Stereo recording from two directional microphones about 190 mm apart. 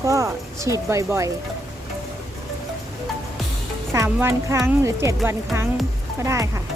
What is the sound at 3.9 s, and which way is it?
A woman's voice, 15° right (ahead or behind).